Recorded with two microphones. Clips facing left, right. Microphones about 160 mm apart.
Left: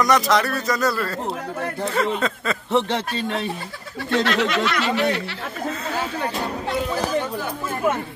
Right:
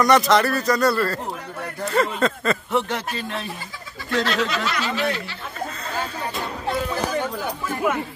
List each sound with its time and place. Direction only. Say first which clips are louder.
0.0 s speech: right 2 dB; centre (ahead or behind)
2.7 s speech: left 2 dB; 30° left (ahead or behind)
4.1 s speech: left 2 dB; 65° left (ahead or behind)